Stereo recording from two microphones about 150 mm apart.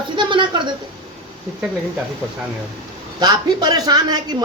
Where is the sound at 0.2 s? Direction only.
30° right (ahead or behind).